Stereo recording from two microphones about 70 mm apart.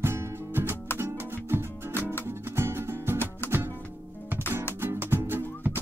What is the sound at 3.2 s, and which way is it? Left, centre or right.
Music, left.